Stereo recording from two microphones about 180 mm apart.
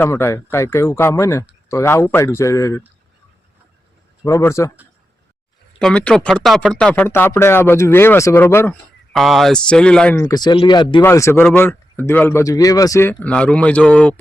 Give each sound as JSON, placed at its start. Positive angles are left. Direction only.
{"t": 0.0, "sound": "speech", "side_deg": 15}
{"t": 4.2, "sound": "speech", "side_deg": 15}
{"t": 5.8, "sound": "speech", "side_deg": 5}
{"t": 9.1, "sound": "speech", "side_deg": 0}
{"t": 10.2, "sound": "speech", "side_deg": 20}
{"t": 11.0, "sound": "speech", "side_deg": 15}